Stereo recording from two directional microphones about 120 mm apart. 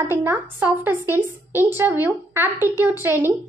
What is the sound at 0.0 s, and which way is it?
A child's voice, 20° right (ahead or behind).